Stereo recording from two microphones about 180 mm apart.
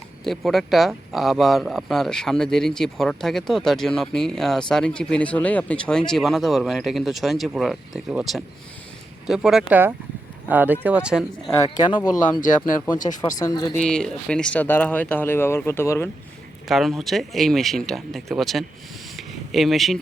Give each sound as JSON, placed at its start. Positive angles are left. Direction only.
{"t": 0.3, "sound": "speech", "side_deg": 0}
{"t": 12.4, "sound": "speech", "side_deg": 45}
{"t": 13.4, "sound": "speech", "side_deg": 20}
{"t": 13.8, "sound": "speech", "side_deg": 5}
{"t": 16.6, "sound": "speech", "side_deg": 0}
{"t": 19.1, "sound": "a sound", "side_deg": 0}